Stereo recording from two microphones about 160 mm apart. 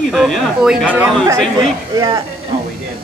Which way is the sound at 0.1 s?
Centre (ahead or behind).